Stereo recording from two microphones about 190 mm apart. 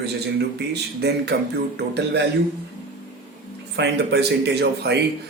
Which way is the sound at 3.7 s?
60° right (ahead or behind).